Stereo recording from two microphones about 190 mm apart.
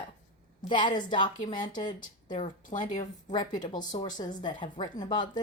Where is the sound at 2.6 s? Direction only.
40° left (ahead or behind).